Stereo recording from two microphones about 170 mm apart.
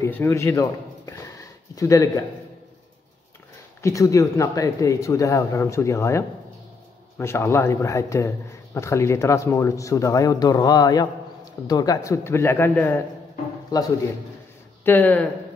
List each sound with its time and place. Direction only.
0.0 s a sound: 15° left (ahead or behind)
1.8 s a man's voice: 20° left (ahead or behind)
3.8 s speech: 20° left (ahead or behind)
14.9 s speech: 10° left (ahead or behind)